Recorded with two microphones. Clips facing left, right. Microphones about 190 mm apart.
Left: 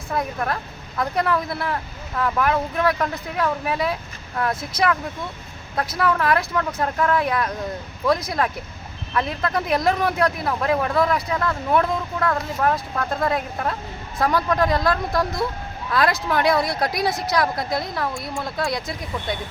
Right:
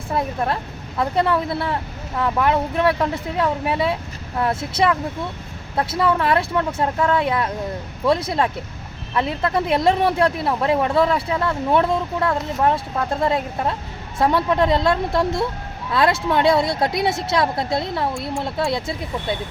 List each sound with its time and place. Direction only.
0.1 s speech: 25° right (ahead or behind)